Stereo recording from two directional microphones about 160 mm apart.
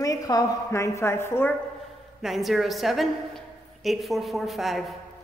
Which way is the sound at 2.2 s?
Centre (ahead or behind).